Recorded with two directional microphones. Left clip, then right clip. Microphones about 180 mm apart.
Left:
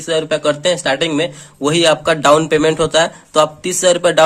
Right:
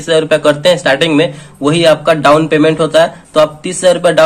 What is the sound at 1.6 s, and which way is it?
A man's voice, 40° left (ahead or behind).